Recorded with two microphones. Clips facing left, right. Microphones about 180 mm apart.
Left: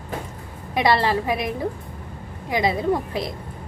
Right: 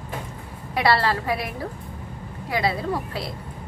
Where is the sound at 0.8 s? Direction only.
20° left (ahead or behind).